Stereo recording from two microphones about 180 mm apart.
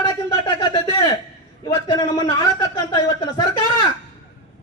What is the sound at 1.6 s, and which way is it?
Speech, 25° left (ahead or behind).